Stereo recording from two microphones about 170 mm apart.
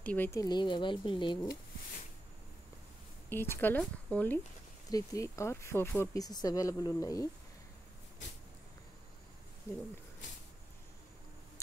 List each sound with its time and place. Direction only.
0.0 s speech: 10° left (ahead or behind); by 1.5 s 30° left (ahead or behind)
3.3 s speech: 15° left (ahead or behind)
4.8 s speech: 20° left (ahead or behind)